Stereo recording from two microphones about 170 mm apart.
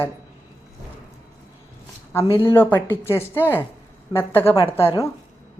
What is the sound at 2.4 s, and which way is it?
A woman's voice, 10° left (ahead or behind).